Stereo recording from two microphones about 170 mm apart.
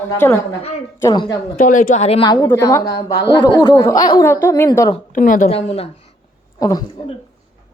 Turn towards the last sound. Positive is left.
turn(degrees=20)  # may be behind; listen again after turning